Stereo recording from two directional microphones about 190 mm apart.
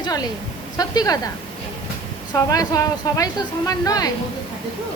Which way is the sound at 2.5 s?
20° left (ahead or behind).